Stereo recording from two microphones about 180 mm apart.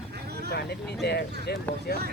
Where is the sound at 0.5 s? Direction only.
65° left (ahead or behind).